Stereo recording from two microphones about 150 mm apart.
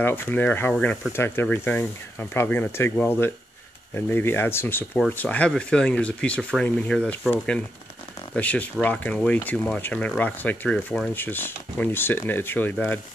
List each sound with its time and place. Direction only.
0.0 s speech: 15° left (ahead or behind)